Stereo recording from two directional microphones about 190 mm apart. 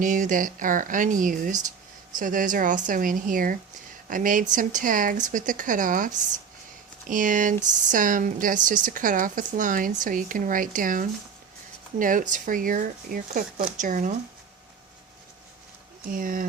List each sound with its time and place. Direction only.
0.0 s speech: 45° right (ahead or behind)
16.0 s speech: 45° right (ahead or behind)